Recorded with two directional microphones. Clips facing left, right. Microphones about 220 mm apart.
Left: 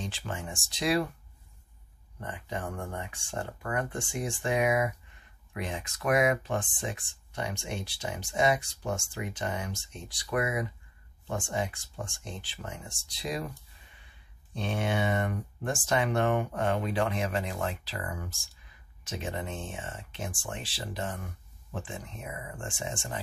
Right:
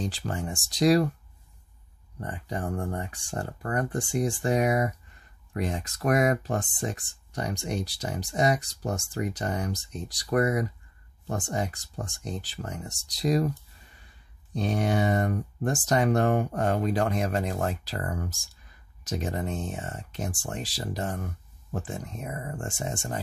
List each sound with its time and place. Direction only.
0.0 s speech: 40° right (ahead or behind)
2.1 s speech: 40° right (ahead or behind)